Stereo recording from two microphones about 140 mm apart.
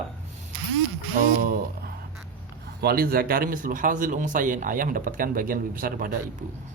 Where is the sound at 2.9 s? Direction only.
90° right.